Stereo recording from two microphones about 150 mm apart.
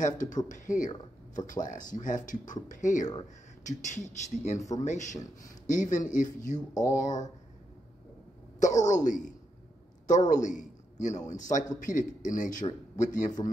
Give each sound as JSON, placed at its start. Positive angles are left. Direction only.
{"t": 0.0, "sound": "a man's voice", "side_deg": 55}
{"t": 4.6, "sound": "speech", "side_deg": 20}
{"t": 4.8, "sound": "a man's voice", "side_deg": 55}
{"t": 8.8, "sound": "a man's voice", "side_deg": 55}